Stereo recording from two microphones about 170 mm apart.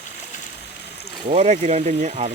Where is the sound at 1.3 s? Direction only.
40° right (ahead or behind).